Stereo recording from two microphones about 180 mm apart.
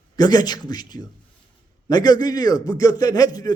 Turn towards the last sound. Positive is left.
turn(degrees=20)  # may be behind; listen again after turning